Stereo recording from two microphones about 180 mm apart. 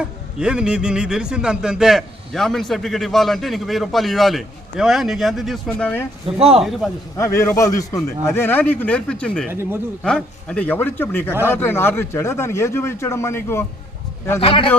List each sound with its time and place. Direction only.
0.0 s a man's voice: 5° right (ahead or behind)
6.2 s speech: 35° right (ahead or behind)
6.6 s a man's voice: centre (ahead or behind)
7.2 s a man's voice: 15° left (ahead or behind)
9.5 s speech: 15° right (ahead or behind)
10.0 s a man's voice: 5° left (ahead or behind)
14.4 s a man's voice: 30° left (ahead or behind)